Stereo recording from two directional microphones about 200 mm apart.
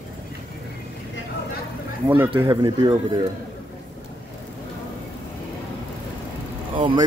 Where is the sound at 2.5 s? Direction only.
20° right (ahead or behind).